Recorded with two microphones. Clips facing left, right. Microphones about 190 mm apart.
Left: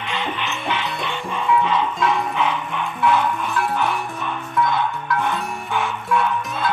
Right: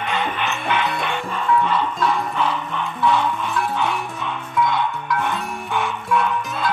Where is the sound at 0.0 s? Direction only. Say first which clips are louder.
Right 3 dB; 50° right (ahead or behind).